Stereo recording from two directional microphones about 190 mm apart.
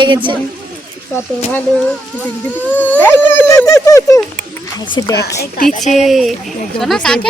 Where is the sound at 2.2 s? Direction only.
10° left (ahead or behind).